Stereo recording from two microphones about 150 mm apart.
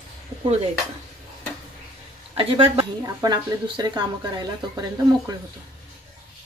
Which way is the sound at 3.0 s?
25° right (ahead or behind).